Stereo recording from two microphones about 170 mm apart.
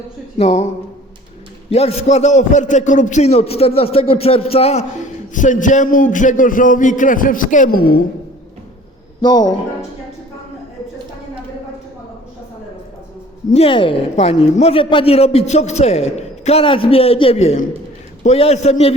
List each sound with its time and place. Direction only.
0.3 s a man's voice: 40° left (ahead or behind)
1.7 s a man's voice: 35° left (ahead or behind)
5.3 s a man's voice: 50° left (ahead or behind)
9.2 s speech: 25° left (ahead or behind)
13.5 s a man's voice: 35° left (ahead or behind)